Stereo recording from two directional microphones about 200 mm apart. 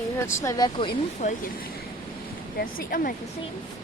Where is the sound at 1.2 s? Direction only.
35° left (ahead or behind).